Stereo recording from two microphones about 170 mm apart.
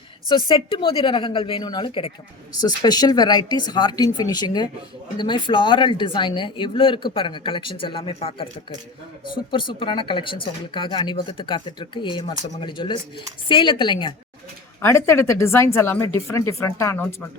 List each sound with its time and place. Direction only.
0.3 s a woman's voice: 30° left (ahead or behind)
2.5 s speech: 25° left (ahead or behind)
14.8 s speech: 15° left (ahead or behind)